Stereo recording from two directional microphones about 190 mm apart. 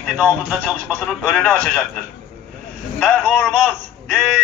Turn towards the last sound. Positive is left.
turn(degrees=5)  # may be behind; listen again after turning